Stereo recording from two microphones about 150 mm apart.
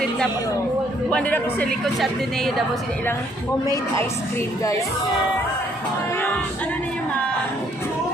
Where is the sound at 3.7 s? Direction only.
20° left (ahead or behind).